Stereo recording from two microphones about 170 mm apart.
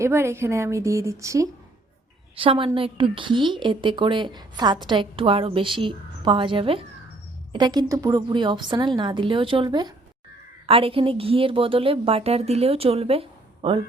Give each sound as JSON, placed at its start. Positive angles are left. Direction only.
{"t": 0.0, "sound": "a woman's voice", "side_deg": -15}
{"t": 2.3, "sound": "a woman's voice", "side_deg": -30}